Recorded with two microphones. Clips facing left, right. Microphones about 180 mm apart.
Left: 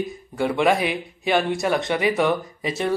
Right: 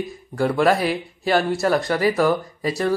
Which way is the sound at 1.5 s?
Centre (ahead or behind).